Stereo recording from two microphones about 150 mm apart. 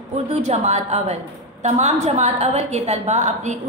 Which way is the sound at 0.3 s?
50° right (ahead or behind).